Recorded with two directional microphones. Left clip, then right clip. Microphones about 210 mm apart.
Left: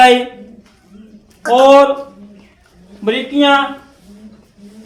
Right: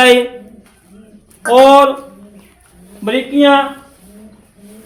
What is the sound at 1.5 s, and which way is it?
Speech, 45° right (ahead or behind).